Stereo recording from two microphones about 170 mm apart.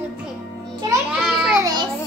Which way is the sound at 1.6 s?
20° right (ahead or behind).